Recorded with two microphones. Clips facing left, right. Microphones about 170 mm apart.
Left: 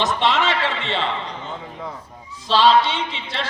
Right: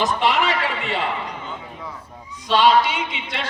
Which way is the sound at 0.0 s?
20° left (ahead or behind).